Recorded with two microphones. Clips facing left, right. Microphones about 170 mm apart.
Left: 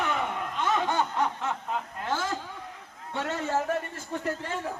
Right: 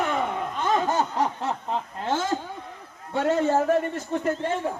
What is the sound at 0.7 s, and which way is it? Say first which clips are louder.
Snicker: right 4 dB; 40° right (ahead or behind).